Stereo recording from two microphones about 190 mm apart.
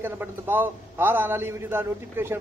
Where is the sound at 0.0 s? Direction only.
10° right (ahead or behind).